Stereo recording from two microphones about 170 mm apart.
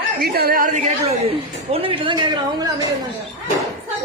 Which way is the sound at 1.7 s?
30° right (ahead or behind).